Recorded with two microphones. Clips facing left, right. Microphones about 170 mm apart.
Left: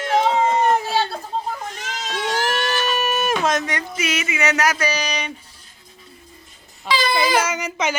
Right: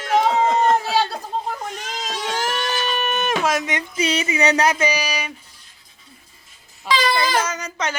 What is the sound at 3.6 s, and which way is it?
Speech, 20° right (ahead or behind).